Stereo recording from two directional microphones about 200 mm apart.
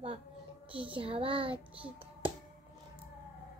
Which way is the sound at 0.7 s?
25° right (ahead or behind).